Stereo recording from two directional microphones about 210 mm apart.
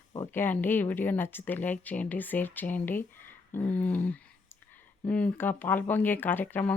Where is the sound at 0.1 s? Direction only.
15° left (ahead or behind).